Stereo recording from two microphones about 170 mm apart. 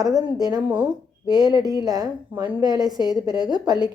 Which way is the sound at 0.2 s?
20° right (ahead or behind).